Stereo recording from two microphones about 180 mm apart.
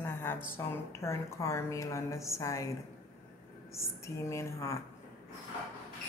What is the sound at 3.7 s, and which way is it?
Speech, 15° left (ahead or behind).